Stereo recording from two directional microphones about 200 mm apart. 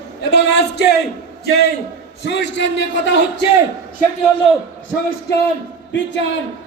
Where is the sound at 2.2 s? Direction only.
60° left (ahead or behind).